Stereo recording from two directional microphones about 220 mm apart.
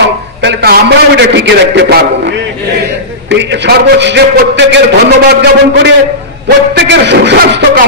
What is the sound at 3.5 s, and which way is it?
A man's voice, 55° right (ahead or behind).